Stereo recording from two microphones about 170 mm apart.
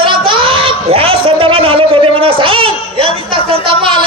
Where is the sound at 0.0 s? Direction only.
30° right (ahead or behind).